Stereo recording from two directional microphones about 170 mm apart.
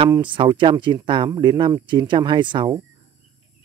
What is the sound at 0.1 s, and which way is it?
Speech, 30° right (ahead or behind).